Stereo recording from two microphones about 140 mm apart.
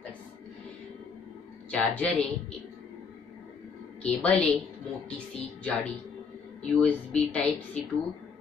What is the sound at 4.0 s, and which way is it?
Speech, 10° left (ahead or behind).